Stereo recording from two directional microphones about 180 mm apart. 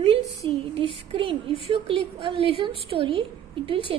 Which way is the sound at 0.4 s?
30° right (ahead or behind).